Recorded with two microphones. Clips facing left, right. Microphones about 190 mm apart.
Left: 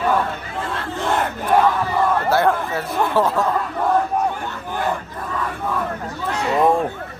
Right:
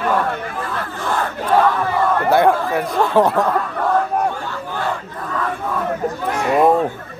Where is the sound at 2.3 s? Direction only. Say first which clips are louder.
Right 4 dB; 15° right (ahead or behind).